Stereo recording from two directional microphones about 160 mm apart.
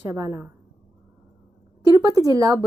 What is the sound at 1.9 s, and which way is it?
Speech, 20° right (ahead or behind).